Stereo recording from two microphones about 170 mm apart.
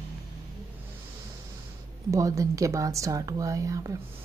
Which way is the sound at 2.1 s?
20° right (ahead or behind).